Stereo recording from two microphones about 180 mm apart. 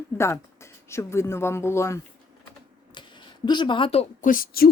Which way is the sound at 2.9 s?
25° left (ahead or behind).